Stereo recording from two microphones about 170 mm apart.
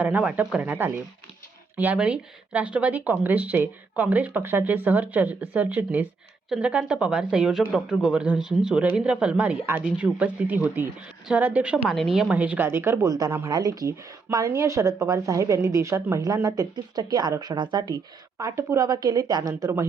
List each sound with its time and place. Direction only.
0.0 s a woman's voice: 10° right (ahead or behind)